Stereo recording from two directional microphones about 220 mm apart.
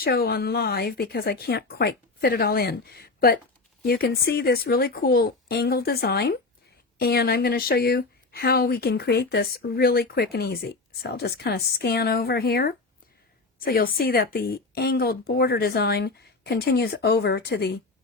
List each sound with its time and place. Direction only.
0.0 s speech: 45° left (ahead or behind)